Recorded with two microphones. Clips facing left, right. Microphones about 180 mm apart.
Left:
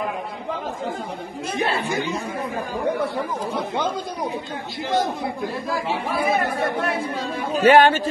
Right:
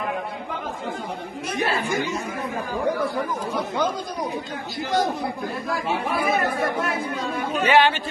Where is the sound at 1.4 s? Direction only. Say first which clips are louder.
Left 1 dB; 30° left (ahead or behind).